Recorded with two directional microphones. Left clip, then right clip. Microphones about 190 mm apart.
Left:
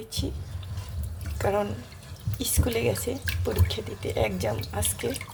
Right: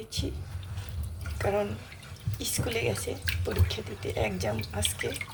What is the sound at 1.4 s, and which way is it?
Speech, 15° left (ahead or behind).